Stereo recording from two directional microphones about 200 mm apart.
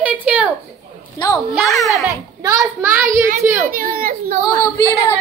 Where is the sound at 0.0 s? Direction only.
5° right (ahead or behind).